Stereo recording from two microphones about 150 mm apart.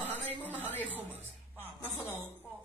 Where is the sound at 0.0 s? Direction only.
10° left (ahead or behind).